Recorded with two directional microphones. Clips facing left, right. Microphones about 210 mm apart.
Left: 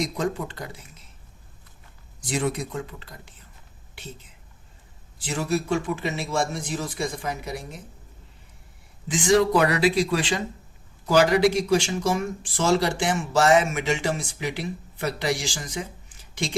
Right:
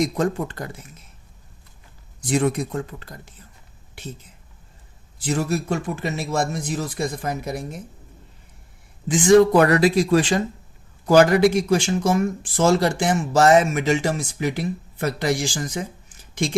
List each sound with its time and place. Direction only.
0.2 s speech: 50° right (ahead or behind)
2.3 s speech: 50° right (ahead or behind)
5.2 s speech: 45° right (ahead or behind)
9.1 s a man's voice: 50° right (ahead or behind)